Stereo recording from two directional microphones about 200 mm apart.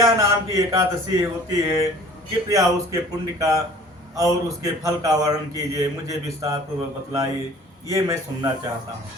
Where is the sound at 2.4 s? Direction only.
15° right (ahead or behind).